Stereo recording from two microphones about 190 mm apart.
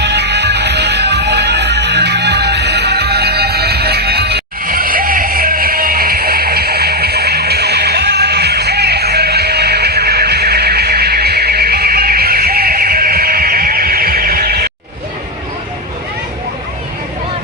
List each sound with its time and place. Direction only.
0.0 s music: 65° right (ahead or behind)